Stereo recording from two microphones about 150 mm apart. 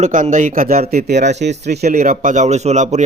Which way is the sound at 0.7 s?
45° right (ahead or behind).